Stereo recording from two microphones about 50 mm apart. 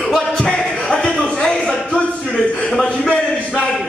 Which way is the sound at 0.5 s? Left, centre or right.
Centre.